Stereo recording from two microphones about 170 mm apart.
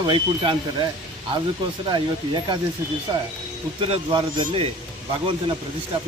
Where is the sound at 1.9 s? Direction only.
25° right (ahead or behind).